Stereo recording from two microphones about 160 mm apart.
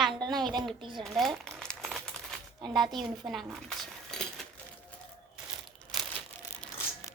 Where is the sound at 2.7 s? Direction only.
Centre (ahead or behind).